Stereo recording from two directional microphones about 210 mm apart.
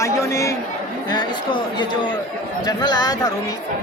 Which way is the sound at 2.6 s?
20° left (ahead or behind).